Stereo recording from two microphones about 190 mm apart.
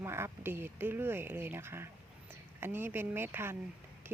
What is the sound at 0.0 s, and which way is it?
Speech, 10° right (ahead or behind).